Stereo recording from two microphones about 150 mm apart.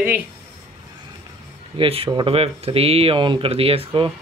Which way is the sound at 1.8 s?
40° right (ahead or behind).